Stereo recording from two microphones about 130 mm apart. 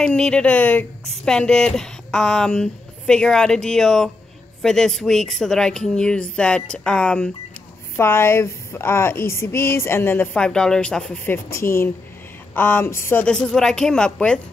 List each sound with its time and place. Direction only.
0.0 s speech: 5° left (ahead or behind)
7.9 s speech: 20° left (ahead or behind)
11.3 s speech: 20° left (ahead or behind)
13.2 s speech: 5° left (ahead or behind)